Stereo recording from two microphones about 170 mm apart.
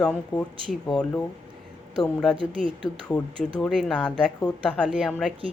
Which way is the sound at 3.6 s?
5° left (ahead or behind).